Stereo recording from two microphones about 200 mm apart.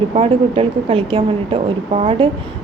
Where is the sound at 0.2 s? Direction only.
25° right (ahead or behind).